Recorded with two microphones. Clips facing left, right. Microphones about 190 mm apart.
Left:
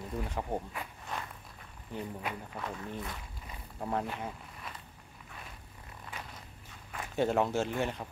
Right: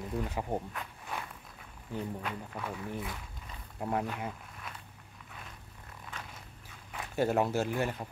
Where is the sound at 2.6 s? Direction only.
5° right (ahead or behind).